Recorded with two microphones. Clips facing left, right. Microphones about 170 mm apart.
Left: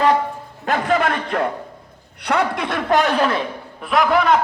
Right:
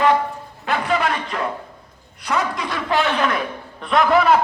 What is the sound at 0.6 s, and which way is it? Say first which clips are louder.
A man's voice: left 2 dB; 45° left (ahead or behind).